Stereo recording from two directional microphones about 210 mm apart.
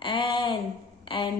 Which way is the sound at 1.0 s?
25° left (ahead or behind).